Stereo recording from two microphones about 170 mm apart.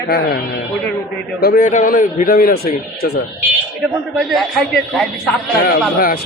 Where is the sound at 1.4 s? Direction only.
55° left (ahead or behind).